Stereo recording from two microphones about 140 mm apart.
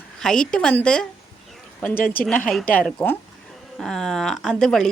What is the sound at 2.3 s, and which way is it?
A woman's voice, 5° left (ahead or behind).